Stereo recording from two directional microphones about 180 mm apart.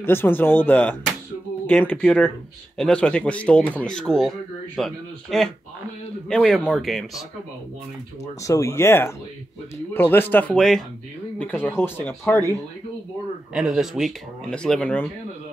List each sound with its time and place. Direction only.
0.0 s speech: 10° left (ahead or behind)
8.4 s speech: 15° left (ahead or behind)
13.5 s speech: 5° right (ahead or behind)